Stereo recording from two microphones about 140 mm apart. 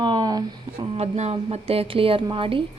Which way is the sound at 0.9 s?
50° right (ahead or behind).